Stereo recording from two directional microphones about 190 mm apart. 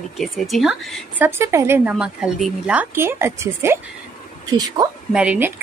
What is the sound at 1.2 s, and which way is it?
A woman's voice, 15° right (ahead or behind).